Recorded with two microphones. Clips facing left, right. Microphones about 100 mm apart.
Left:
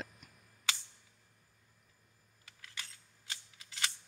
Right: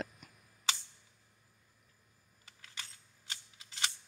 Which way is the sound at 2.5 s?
25° right (ahead or behind).